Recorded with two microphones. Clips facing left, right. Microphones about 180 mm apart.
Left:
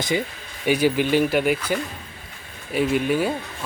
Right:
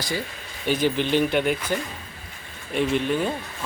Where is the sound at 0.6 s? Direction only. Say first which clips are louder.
Left 3 dB; 10° left (ahead or behind).